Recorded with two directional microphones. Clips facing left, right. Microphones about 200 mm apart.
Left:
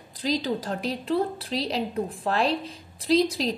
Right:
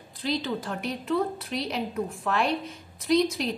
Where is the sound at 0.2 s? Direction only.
40° left (ahead or behind).